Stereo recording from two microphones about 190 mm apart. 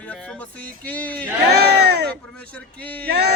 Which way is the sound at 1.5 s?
60° right (ahead or behind).